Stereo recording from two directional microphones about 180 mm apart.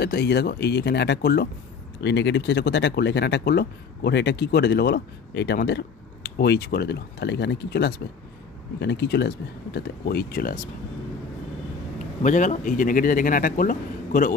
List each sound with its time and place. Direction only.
0.0 s speech: 65° left (ahead or behind)
2.0 s speech: 75° left (ahead or behind); by 10.6 s 55° left (ahead or behind)
12.2 s a man's voice: 45° left (ahead or behind)